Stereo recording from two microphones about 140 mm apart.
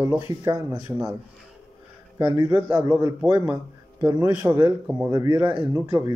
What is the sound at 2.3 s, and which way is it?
A man's voice, 15° right (ahead or behind).